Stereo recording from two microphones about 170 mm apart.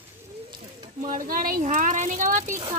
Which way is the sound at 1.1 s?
55° right (ahead or behind).